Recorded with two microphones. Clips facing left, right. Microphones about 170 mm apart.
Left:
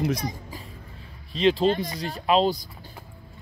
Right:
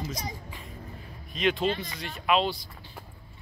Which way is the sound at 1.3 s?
30° left (ahead or behind).